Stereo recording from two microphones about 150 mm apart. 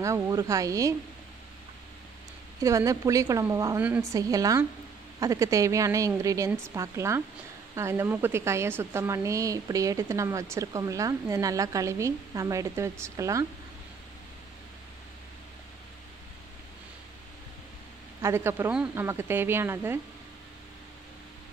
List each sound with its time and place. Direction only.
0.0 s a woman's voice: 20° right (ahead or behind)
2.6 s a woman's voice: 20° right (ahead or behind)
18.2 s a woman's voice: 15° right (ahead or behind)